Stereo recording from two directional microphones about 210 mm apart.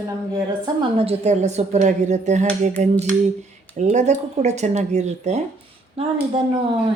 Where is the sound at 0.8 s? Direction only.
25° right (ahead or behind).